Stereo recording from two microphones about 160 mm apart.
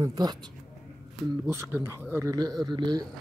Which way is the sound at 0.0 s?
25° right (ahead or behind).